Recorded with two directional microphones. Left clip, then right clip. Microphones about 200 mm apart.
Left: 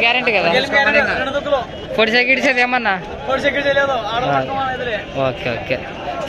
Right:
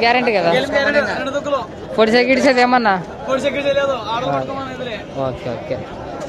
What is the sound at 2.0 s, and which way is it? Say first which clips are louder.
Speech: right 1 dB; 20° right (ahead or behind).